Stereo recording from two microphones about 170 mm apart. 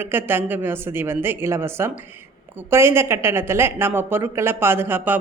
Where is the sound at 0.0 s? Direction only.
15° right (ahead or behind).